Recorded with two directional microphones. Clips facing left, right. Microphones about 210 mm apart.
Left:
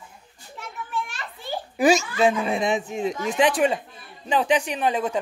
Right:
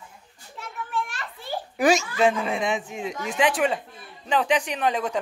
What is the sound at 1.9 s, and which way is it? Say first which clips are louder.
Speech: left 1 dB; centre (ahead or behind).